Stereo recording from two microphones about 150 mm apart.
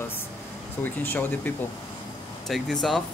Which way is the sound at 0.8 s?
15° left (ahead or behind).